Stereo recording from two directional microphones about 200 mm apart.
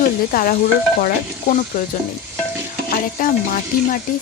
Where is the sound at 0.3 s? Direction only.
45° left (ahead or behind).